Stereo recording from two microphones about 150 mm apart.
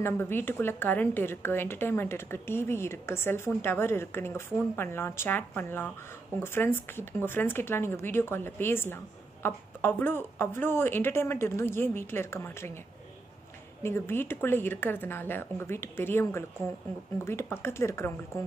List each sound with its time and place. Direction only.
0.0 s speech: 15° left (ahead or behind)
13.8 s speech: 15° left (ahead or behind)